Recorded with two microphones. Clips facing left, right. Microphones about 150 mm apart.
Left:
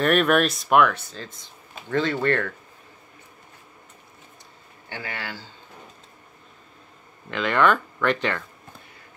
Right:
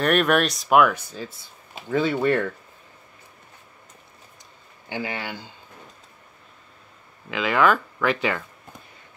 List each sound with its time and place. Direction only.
0.0 s speech: centre (ahead or behind)
4.8 s speech: 15° right (ahead or behind)
7.2 s speech: 5° right (ahead or behind)